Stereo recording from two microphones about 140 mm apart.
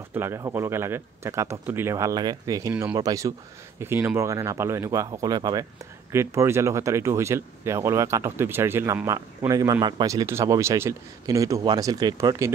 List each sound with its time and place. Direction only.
0.1 s speech: 15° right (ahead or behind)